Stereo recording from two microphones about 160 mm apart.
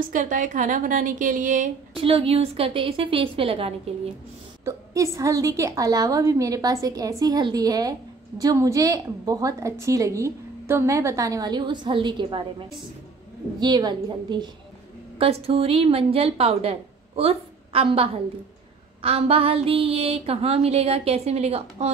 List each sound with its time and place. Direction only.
0.1 s a woman's voice: 55° right (ahead or behind)
2.0 s speech: 35° right (ahead or behind)
4.6 s a woman's voice: 20° right (ahead or behind)
15.1 s speech: 40° right (ahead or behind)